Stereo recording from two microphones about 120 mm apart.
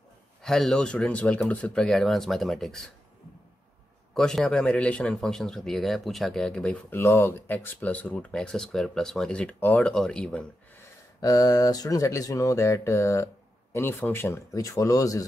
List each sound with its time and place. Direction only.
0.4 s a man's voice: 5° left (ahead or behind)
4.1 s a man's voice: 5° left (ahead or behind)
7.0 s speech: 25° left (ahead or behind); by 10.4 s 5° left (ahead or behind)
11.1 s speech: 30° left (ahead or behind)